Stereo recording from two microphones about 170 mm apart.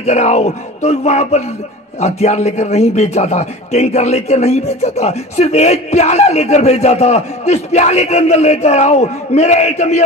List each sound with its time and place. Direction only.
0.0 s speech: 40° left (ahead or behind)